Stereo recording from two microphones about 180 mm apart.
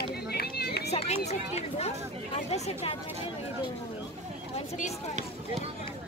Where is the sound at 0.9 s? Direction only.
35° left (ahead or behind).